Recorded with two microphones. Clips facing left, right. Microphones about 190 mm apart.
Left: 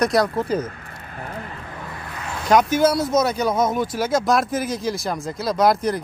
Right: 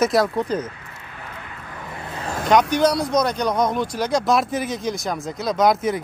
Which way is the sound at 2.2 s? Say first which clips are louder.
Right 4 dB; 40° right (ahead or behind).